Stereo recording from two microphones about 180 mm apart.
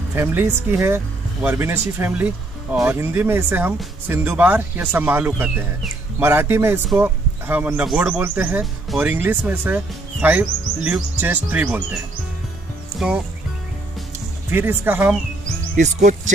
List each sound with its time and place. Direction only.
0.1 s speech: 10° right (ahead or behind)
14.5 s speech: 10° right (ahead or behind)
15.7 s speech: 40° right (ahead or behind)